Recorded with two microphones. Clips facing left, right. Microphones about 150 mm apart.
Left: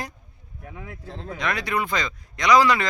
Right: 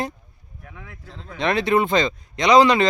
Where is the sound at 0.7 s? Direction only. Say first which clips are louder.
Left 5 dB; 30° left (ahead or behind).